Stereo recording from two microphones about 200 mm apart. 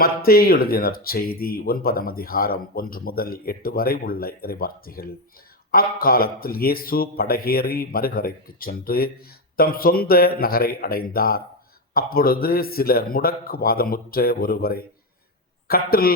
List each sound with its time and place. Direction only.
0.0 s speech: 50° left (ahead or behind)